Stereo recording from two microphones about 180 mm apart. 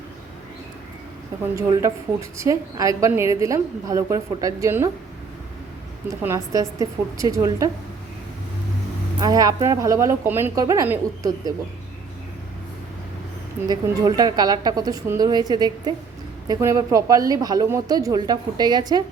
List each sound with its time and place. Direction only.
1.5 s a woman's voice: 15° right (ahead or behind)
6.1 s speech: 15° right (ahead or behind)
9.1 s a woman's voice: 20° right (ahead or behind)
13.6 s speech: 15° right (ahead or behind)